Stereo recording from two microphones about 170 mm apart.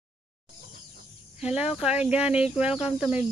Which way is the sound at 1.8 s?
5° right (ahead or behind).